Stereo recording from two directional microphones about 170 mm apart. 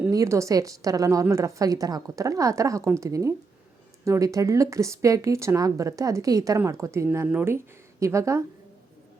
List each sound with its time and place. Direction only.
0.1 s a woman's voice: 20° right (ahead or behind)